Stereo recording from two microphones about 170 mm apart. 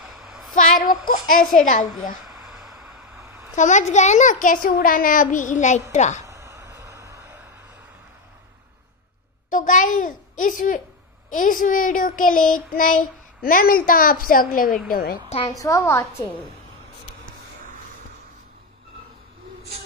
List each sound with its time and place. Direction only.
0.0 s a sound: centre (ahead or behind)
0.6 s a child's voice: 55° left (ahead or behind)
3.2 s a sound: 15° right (ahead or behind)
3.5 s a child's voice: 45° left (ahead or behind)
6.2 s a sound: 15° right (ahead or behind)
9.5 s a child's voice: 50° left (ahead or behind)
11.3 s child singing: 50° left (ahead or behind)
15.2 s a woman's voice: 35° left (ahead or behind)
15.5 s a woman's voice: 20° left (ahead or behind)